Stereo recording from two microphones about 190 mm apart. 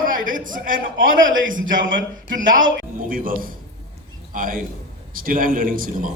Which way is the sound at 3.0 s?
45° right (ahead or behind).